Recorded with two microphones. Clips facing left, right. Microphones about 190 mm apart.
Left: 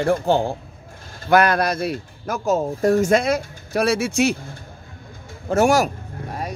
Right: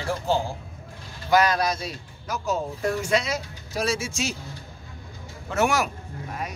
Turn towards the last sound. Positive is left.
turn(degrees=35)  # may be behind; listen again after turning